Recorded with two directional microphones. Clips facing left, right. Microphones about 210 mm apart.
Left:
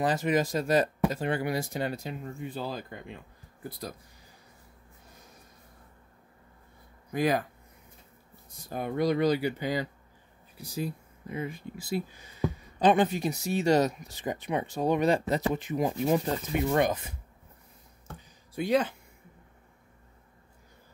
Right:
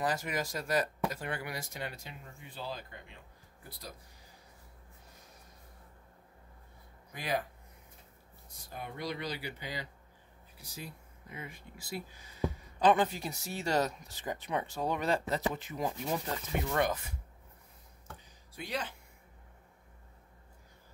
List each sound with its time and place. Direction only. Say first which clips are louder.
0.0 s speech: left 8 dB; 25° left (ahead or behind); by 3.2 s 45° left (ahead or behind)
7.1 s speech: left 9 dB; 45° left (ahead or behind)
8.6 s speech: left 12 dB; 50° left (ahead or behind)
10.6 s speech: left 13 dB; 35° left (ahead or behind)
12.7 s speech: left 4 dB; 20° left (ahead or behind)
18.6 s speech: left 13 dB; 50° left (ahead or behind)